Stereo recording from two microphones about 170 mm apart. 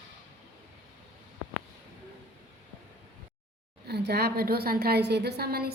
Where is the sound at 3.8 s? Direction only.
75° right (ahead or behind).